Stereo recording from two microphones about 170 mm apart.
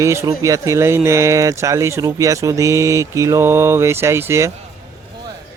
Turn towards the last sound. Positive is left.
turn(degrees=-15)  # may be behind; listen again after turning